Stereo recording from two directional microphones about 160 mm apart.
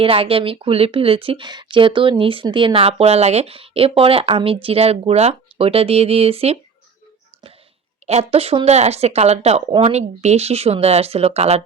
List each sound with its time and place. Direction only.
0.0 s speech: 35° right (ahead or behind)
8.0 s speech: 40° right (ahead or behind)